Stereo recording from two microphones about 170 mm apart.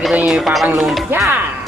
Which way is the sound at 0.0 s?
5° right (ahead or behind).